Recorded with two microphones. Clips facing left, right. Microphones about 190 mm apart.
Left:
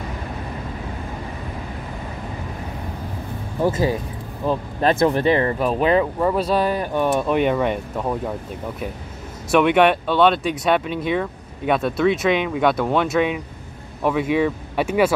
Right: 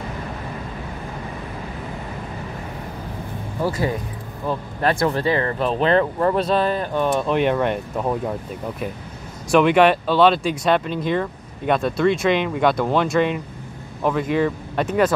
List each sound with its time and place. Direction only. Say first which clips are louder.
3.6 s speech: left 3 dB; 20° left (ahead or behind)
5.6 s speech: even; 10° left (ahead or behind)
9.5 s speech: right 1 dB; centre (ahead or behind)